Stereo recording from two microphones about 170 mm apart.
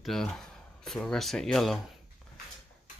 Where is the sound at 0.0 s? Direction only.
Centre (ahead or behind).